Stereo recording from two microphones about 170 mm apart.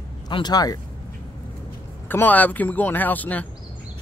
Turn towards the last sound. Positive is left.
turn(degrees=10)  # may be behind; listen again after turning